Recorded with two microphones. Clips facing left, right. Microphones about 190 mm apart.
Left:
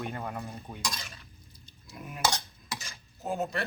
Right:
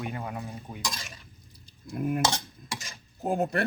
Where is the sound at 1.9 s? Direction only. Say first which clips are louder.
Right 14 dB; 50° right (ahead or behind).